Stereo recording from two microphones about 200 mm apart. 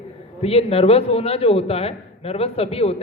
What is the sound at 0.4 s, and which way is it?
A man's voice, 30° left (ahead or behind).